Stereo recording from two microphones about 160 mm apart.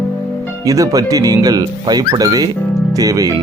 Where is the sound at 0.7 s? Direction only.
20° right (ahead or behind).